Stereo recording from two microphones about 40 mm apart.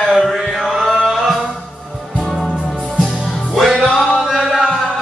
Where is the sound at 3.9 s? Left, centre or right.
Centre.